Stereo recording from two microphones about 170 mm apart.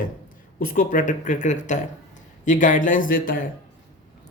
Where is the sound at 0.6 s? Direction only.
55° left (ahead or behind).